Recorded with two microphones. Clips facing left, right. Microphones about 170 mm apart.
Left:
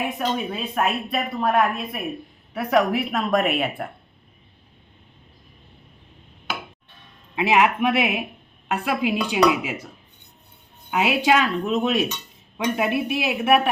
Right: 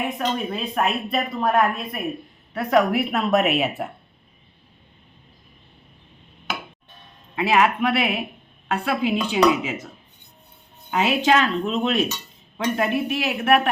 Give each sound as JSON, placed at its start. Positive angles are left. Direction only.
{"t": 0.2, "sound": "a woman's voice", "side_deg": 5}
{"t": 7.3, "sound": "speech", "side_deg": 15}
{"t": 10.9, "sound": "speech", "side_deg": 5}